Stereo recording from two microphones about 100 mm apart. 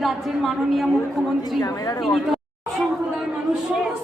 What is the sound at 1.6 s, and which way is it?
Speech, 40° left (ahead or behind).